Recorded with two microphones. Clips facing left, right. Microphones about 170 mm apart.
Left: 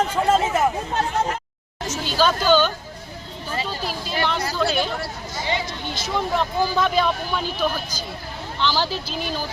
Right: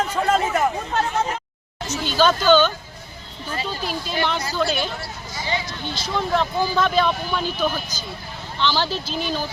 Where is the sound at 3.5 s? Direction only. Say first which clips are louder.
Even; 35° left (ahead or behind).